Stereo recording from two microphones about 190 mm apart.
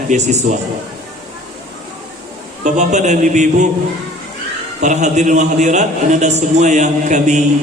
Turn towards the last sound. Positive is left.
turn(degrees=-40)  # may be behind; listen again after turning